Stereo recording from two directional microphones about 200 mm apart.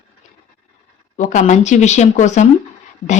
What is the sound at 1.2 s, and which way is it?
A woman's voice, 40° left (ahead or behind).